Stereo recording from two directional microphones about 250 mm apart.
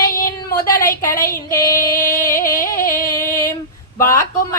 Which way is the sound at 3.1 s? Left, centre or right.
Centre.